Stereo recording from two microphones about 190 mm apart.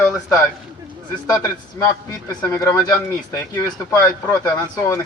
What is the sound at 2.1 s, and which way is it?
A man's voice, 15° left (ahead or behind).